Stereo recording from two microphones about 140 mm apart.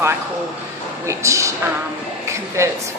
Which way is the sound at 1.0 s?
20° right (ahead or behind).